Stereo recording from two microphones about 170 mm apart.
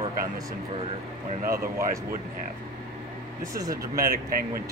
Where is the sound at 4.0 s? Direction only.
60° right (ahead or behind).